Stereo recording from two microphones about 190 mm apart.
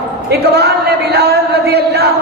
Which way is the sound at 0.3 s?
60° right (ahead or behind).